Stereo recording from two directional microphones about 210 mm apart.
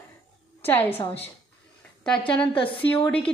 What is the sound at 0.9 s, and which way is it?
A woman's voice, 30° left (ahead or behind).